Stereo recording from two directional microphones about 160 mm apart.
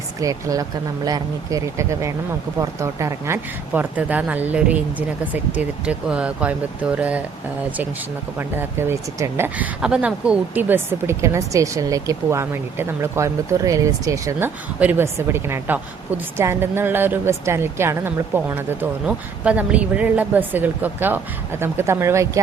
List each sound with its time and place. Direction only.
0.2 s speech: 20° right (ahead or behind)
8.4 s speech: 15° right (ahead or behind)